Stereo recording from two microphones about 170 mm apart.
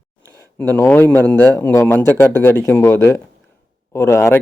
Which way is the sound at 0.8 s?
10° left (ahead or behind).